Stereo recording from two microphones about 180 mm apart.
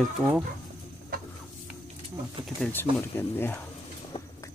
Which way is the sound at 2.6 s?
10° left (ahead or behind).